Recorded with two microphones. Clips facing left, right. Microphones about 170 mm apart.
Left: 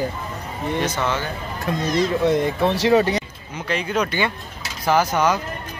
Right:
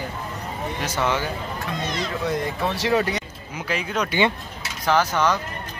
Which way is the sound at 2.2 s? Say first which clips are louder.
Left 6 dB; 25° left (ahead or behind).